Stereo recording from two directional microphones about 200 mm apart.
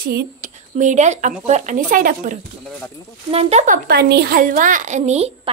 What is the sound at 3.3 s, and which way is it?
A woman's voice, 30° right (ahead or behind).